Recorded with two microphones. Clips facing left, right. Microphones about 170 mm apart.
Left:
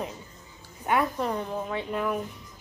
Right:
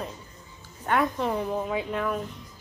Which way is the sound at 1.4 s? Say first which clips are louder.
Right 3 dB; 10° right (ahead or behind).